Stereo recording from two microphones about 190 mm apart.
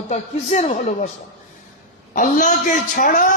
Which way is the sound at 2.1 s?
45° left (ahead or behind).